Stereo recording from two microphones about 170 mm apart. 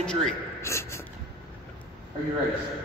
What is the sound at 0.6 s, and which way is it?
Speech, 15° left (ahead or behind).